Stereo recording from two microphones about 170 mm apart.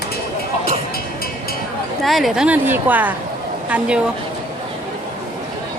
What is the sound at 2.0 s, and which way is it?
A woman's voice, centre (ahead or behind).